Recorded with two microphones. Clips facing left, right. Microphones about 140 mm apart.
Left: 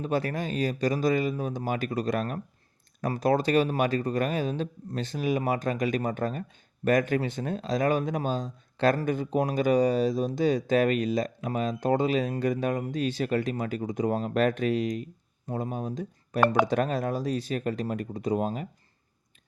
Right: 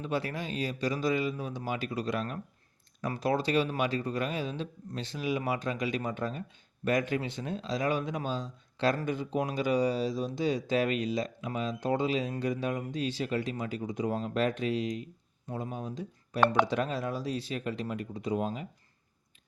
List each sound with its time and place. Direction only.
0.0 s speech: 45° left (ahead or behind)